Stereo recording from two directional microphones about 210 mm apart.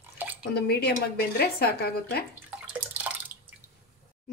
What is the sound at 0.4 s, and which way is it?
Speech, 50° left (ahead or behind).